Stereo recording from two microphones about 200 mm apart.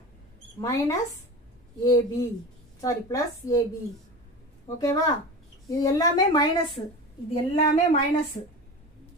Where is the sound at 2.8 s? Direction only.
15° left (ahead or behind).